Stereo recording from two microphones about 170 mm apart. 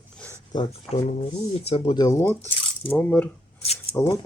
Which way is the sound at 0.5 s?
30° left (ahead or behind).